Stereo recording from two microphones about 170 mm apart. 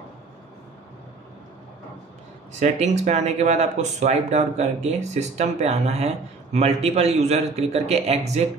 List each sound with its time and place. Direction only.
2.6 s speech: 40° right (ahead or behind)